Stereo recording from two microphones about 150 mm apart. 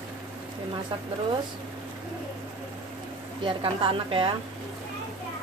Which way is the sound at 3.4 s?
35° right (ahead or behind).